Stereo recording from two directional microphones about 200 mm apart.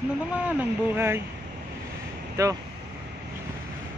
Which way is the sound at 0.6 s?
10° right (ahead or behind).